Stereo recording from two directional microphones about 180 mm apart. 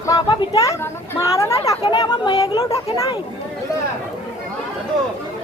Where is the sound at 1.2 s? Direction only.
15° left (ahead or behind).